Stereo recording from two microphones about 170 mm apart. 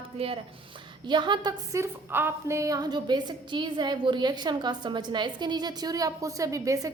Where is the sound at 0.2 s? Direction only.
35° right (ahead or behind).